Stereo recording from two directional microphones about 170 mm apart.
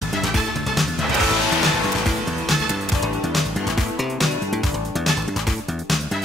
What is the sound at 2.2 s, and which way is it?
Music, centre (ahead or behind).